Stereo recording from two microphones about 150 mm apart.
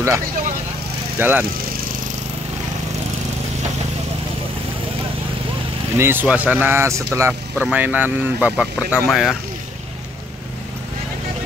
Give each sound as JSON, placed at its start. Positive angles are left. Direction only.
{"t": 1.1, "sound": "speech", "side_deg": -15}
{"t": 5.9, "sound": "speech", "side_deg": -15}